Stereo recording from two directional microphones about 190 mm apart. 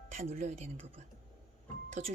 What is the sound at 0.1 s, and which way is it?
A woman's voice, 35° right (ahead or behind).